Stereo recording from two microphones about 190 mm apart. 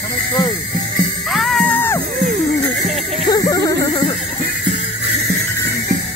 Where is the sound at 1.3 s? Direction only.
Centre (ahead or behind).